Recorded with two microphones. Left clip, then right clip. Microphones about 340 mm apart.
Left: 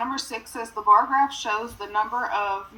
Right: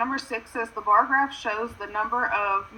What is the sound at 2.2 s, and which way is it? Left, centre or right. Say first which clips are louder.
Speech: right 1 dB; centre.